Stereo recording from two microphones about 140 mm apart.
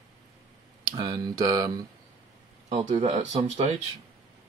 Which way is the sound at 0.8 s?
30° right (ahead or behind).